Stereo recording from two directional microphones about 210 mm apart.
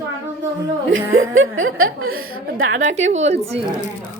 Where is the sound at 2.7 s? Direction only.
35° right (ahead or behind).